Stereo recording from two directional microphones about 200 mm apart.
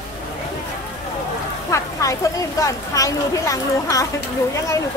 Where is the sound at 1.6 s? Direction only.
15° left (ahead or behind).